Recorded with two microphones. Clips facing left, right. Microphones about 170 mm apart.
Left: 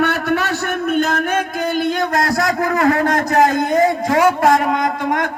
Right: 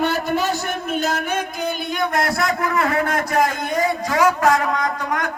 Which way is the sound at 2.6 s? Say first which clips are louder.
Left 7 dB; 35° left (ahead or behind).